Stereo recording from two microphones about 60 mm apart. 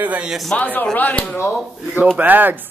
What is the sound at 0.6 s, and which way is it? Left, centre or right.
Speech, left.